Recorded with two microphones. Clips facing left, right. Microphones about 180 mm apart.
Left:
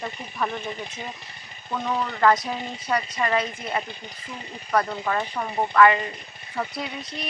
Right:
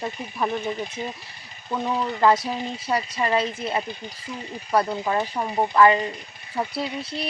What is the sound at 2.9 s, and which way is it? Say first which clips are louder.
Speech: right 1 dB; 15° right (ahead or behind).